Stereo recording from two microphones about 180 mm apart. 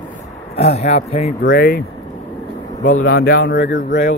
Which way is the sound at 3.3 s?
85° left.